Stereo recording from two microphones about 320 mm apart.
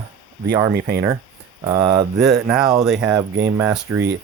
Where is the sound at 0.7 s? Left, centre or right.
Right.